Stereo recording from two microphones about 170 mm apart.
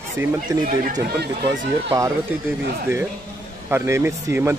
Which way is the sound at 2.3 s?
10° right (ahead or behind).